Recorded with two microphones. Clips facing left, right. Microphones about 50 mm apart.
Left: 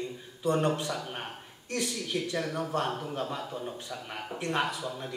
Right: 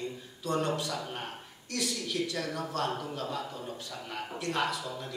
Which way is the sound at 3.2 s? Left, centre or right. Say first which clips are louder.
Left 2 dB; left.